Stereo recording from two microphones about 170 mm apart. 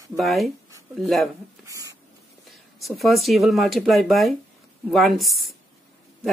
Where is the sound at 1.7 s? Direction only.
20° right (ahead or behind).